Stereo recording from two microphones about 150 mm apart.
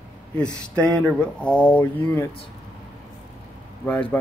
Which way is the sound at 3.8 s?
10° left (ahead or behind).